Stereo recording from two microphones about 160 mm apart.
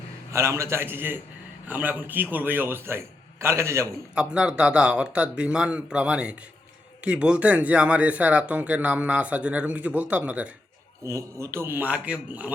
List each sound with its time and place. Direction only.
0.3 s speech: 15° right (ahead or behind)
4.1 s speech: 5° right (ahead or behind)